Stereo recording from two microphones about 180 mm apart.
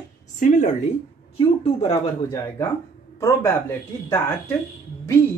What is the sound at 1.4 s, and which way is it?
Speech, 30° left (ahead or behind).